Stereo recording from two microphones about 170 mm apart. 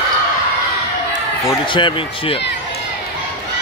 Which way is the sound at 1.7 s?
30° left (ahead or behind).